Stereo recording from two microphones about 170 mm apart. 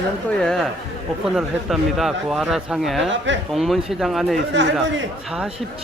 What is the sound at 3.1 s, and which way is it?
Speech, 90° right.